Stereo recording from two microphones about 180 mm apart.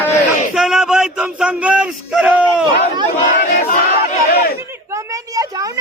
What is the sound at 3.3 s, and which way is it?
Battle cry, 50° left (ahead or behind).